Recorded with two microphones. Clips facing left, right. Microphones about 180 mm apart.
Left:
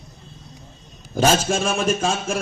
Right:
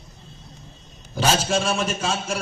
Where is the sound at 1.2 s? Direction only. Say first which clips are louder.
Left 3 dB; 45° left (ahead or behind).